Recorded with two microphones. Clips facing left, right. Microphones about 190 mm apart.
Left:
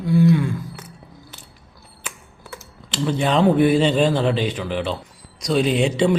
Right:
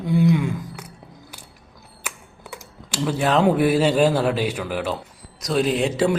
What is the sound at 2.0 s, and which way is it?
Speech, 15° right (ahead or behind).